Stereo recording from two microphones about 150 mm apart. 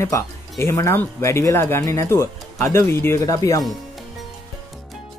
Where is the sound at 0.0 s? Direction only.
20° left (ahead or behind).